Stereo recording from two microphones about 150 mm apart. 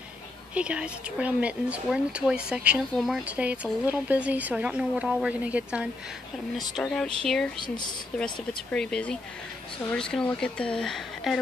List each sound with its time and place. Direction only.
0.6 s speech: 10° right (ahead or behind)
6.7 s speech: 5° left (ahead or behind)
7.6 s speech: 30° left (ahead or behind)
8.7 s speech: 5° left (ahead or behind)